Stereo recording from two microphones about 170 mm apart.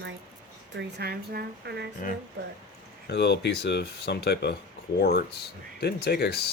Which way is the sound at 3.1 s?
80° left.